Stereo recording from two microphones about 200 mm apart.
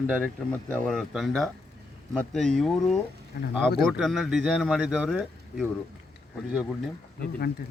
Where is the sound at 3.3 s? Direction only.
45° left (ahead or behind).